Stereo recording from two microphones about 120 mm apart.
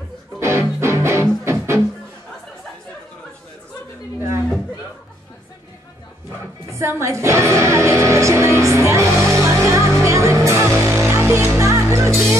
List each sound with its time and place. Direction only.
0.4 s music: 25° right (ahead or behind)
6.7 s music: 25° right (ahead or behind)